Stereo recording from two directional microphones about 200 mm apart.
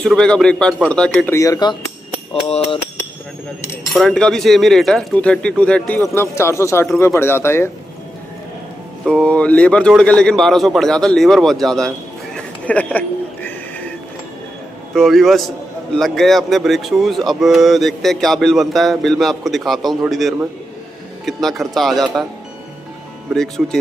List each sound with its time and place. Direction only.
0.0 s a man's voice: 5° left (ahead or behind); by 1.8 s 20° left (ahead or behind)
2.4 s speech: 30° left (ahead or behind)
3.9 s a man's voice: centre (ahead or behind)
9.1 s a man's voice: 5° left (ahead or behind)
12.4 s a sound: 5° left (ahead or behind)
15.0 s a man's voice: centre (ahead or behind)
23.3 s a man's voice: centre (ahead or behind)